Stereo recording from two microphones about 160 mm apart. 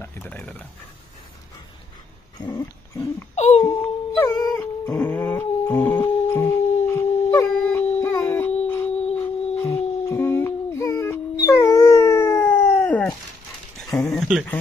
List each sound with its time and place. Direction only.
0.0 s dog: 15° left (ahead or behind)
2.4 s dog: 25° left (ahead or behind)
3.3 s a sound: 45° left (ahead or behind)
3.6 s music: 10° left (ahead or behind)
4.2 s dog: 25° left (ahead or behind)
5.0 s howl: 10° left (ahead or behind)
9.2 s a sound: 15° left (ahead or behind)
12.7 s groan: 10° left (ahead or behind)
13.8 s a sound: 5° left (ahead or behind)